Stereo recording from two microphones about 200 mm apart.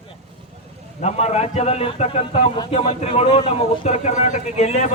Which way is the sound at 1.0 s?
30° left (ahead or behind).